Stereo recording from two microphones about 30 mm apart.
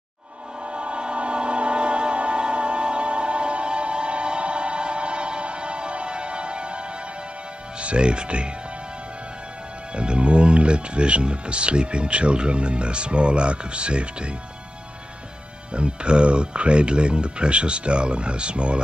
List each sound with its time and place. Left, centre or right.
0.7 s music: right
7.8 s speech: right
9.9 s speech: right
15.7 s speech: right